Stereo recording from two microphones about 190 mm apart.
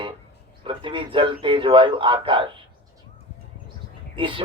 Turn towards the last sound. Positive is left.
turn(degrees=-25)  # may be behind; listen again after turning